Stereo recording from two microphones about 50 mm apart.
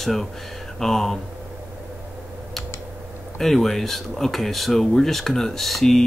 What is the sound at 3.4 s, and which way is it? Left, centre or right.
Speech, centre.